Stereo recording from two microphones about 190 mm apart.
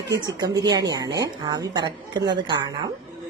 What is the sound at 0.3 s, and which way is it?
A woman's voice, 20° right (ahead or behind).